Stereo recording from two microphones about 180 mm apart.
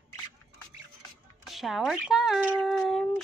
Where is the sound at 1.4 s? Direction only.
Centre (ahead or behind).